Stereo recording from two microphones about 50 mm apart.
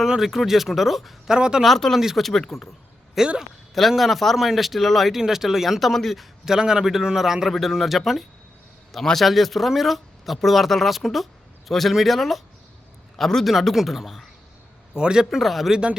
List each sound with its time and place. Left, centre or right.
0.0 s speech: centre
1.3 s a man's voice: centre
1.6 s speech: centre
2.0 s a man's voice: centre
2.2 s speech: centre
3.2 s speech: centre
6.4 s a man's voice: centre